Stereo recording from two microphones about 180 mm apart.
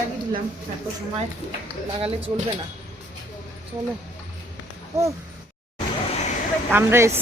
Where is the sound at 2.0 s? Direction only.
35° right (ahead or behind).